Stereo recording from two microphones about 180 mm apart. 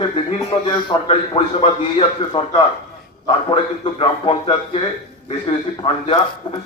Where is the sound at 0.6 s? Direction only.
30° left (ahead or behind).